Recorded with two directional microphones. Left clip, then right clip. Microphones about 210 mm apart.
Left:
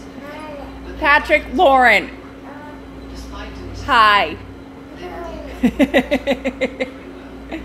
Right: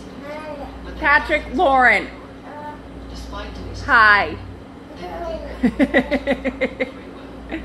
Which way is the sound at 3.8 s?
10° left (ahead or behind).